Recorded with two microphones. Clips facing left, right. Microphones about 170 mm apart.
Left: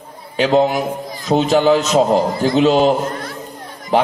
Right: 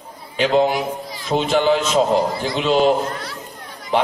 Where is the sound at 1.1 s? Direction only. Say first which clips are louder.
Left 4 dB; 40° left (ahead or behind).